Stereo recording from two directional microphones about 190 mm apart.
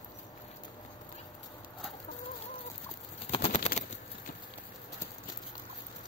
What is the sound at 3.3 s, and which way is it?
Bird, 30° left (ahead or behind).